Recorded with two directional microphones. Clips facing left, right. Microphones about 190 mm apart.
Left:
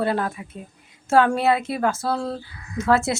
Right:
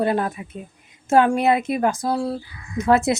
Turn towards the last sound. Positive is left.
turn(degrees=-20)  # may be behind; listen again after turning